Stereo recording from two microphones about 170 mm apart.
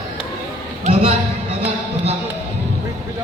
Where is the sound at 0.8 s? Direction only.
35° right (ahead or behind).